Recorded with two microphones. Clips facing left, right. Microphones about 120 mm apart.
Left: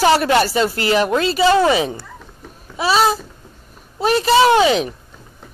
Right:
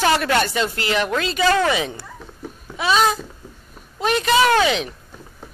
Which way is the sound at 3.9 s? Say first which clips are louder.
Left 4 dB; 35° left (ahead or behind).